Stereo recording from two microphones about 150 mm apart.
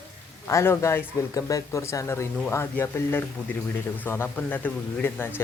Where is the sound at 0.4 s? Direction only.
20° left (ahead or behind).